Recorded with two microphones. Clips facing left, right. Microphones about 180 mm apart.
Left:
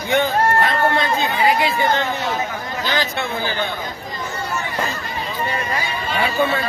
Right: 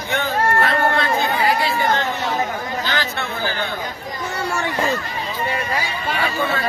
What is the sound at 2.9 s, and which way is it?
Speech, 15° left (ahead or behind).